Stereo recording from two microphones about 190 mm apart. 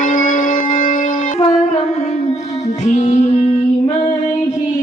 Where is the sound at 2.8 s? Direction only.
40° left (ahead or behind).